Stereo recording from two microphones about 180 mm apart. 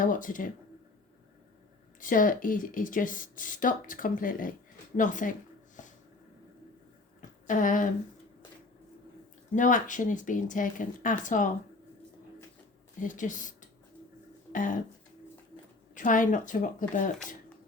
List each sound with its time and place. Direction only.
0.0 s speech: 45° left (ahead or behind)
2.0 s speech: 50° left (ahead or behind)
5.8 s a sound: 45° left (ahead or behind)
7.2 s a sound: 45° left (ahead or behind)
9.6 s speech: 45° left (ahead or behind)
13.0 s speech: 45° left (ahead or behind)
16.0 s speech: 45° left (ahead or behind)